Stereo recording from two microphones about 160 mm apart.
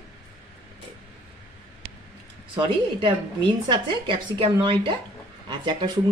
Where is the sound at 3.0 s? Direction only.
30° right (ahead or behind).